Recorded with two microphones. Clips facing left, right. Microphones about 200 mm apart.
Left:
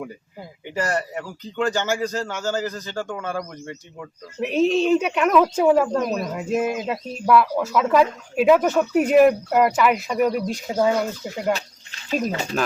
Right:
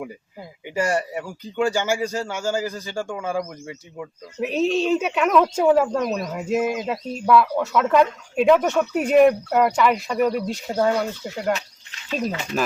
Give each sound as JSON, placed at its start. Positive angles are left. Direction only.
{"t": 0.7, "sound": "a man's voice", "side_deg": -10}
{"t": 12.3, "sound": "speech", "side_deg": 35}